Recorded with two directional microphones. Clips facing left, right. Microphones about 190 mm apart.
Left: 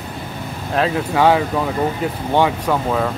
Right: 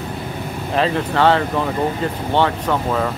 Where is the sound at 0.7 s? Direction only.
5° left (ahead or behind).